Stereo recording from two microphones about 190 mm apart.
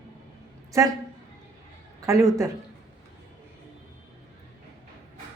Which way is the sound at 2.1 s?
15° right (ahead or behind).